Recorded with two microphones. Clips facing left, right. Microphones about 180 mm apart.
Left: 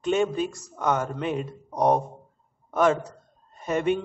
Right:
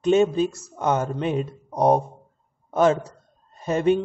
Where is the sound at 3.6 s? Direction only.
30° right (ahead or behind).